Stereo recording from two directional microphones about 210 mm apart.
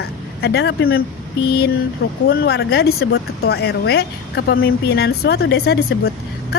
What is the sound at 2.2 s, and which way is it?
Speech, 50° left (ahead or behind).